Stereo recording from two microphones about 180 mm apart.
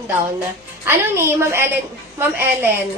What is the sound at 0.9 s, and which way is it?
Speech, 15° right (ahead or behind).